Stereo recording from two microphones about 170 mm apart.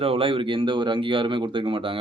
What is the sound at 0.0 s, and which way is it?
Speech, 35° right (ahead or behind).